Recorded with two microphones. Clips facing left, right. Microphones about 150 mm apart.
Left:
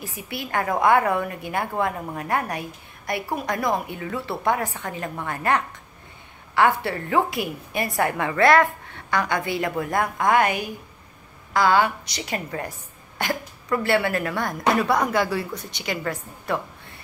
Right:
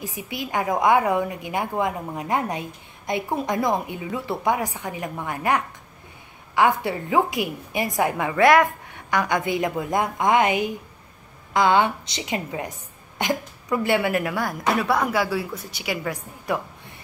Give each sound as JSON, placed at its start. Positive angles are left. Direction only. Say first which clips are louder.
{"t": 0.0, "sound": "a woman's voice", "louder": "right 2 dB", "side_deg": -15}